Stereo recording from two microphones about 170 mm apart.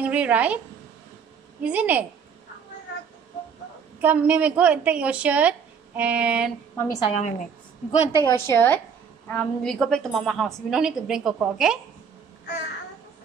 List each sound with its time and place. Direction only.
0.0 s a woman's voice: 10° right (ahead or behind)
1.6 s a woman's voice: 10° right (ahead or behind)
4.0 s a woman's voice: 10° right (ahead or behind)
6.7 s a sound: 15° left (ahead or behind)
7.0 s a woman's voice: 40° left (ahead or behind)
8.2 s a woman's voice: 15° left (ahead or behind); by 11.8 s 5° right (ahead or behind)